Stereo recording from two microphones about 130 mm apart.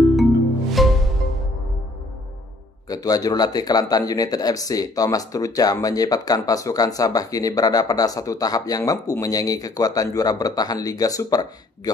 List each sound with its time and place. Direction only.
0.1 s music: centre (ahead or behind)
2.9 s speech: 30° left (ahead or behind)